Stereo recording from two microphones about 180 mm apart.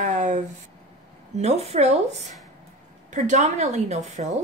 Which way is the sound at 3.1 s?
40° right (ahead or behind).